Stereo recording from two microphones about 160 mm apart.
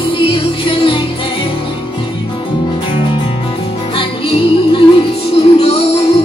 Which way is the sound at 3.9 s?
35° left (ahead or behind).